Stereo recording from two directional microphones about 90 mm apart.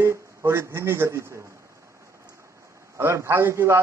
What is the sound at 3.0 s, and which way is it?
Speech, 25° right (ahead or behind).